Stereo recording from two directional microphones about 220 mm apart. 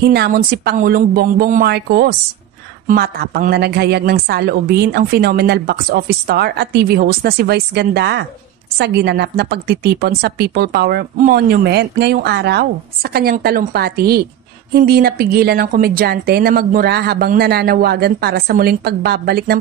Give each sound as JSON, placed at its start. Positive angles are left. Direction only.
{"t": 0.0, "sound": "a woman's voice", "side_deg": -45}